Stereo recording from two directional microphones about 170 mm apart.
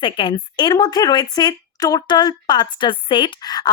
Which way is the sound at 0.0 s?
30° left (ahead or behind).